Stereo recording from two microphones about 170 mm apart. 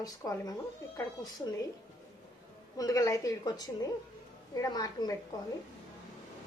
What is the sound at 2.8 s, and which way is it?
A woman's voice, 20° left (ahead or behind).